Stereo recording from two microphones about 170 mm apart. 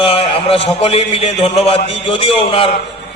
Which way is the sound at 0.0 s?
30° left (ahead or behind).